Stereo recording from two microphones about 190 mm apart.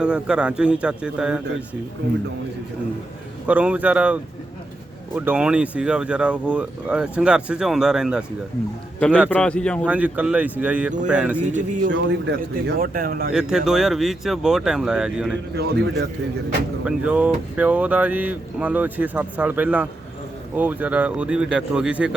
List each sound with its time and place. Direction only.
0.0 s speech: 5° right (ahead or behind)
3.4 s speech: 5° right (ahead or behind)
9.3 s speech: 5° left (ahead or behind)
9.8 s speech: 5° right (ahead or behind)
11.5 s a man's voice: 40° right (ahead or behind)
11.9 s speech: 75° right (ahead or behind)
12.9 s speech: 50° right (ahead or behind)
13.3 s speech: centre (ahead or behind)
15.5 s speech: 60° right (ahead or behind)
16.8 s speech: 5° right (ahead or behind)